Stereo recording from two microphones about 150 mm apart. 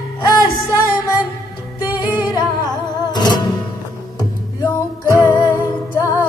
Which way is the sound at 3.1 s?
25° left (ahead or behind).